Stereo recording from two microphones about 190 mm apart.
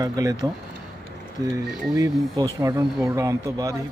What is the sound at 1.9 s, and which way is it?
Speech, 20° right (ahead or behind).